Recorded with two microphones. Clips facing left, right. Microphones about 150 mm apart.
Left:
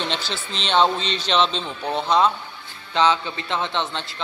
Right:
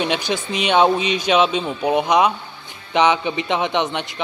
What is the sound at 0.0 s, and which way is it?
A man's voice, 15° right (ahead or behind).